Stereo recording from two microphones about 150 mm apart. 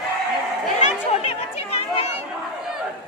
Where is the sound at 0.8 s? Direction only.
45° left (ahead or behind).